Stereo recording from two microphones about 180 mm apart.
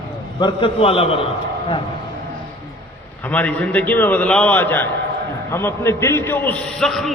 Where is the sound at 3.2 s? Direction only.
10° left (ahead or behind).